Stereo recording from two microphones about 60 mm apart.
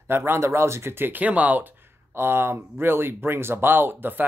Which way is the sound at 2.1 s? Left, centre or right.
Right.